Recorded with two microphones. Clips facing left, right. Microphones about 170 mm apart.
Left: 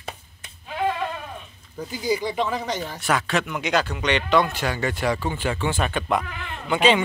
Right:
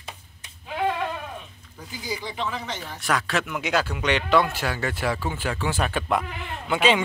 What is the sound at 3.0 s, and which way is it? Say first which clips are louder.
A man's voice: left 1 dB; centre (ahead or behind).